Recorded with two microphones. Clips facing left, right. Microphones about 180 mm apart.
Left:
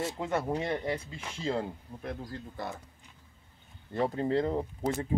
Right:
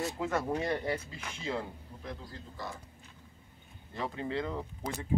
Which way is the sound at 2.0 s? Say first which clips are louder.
Left 5 dB; 55° left (ahead or behind).